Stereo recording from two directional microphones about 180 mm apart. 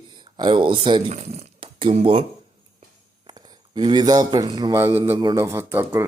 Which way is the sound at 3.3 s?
25° right (ahead or behind).